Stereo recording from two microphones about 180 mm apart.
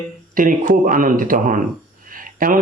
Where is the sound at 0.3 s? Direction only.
50° right (ahead or behind).